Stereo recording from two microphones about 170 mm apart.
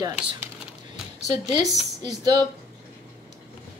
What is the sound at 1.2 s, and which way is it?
Speech, 40° left (ahead or behind).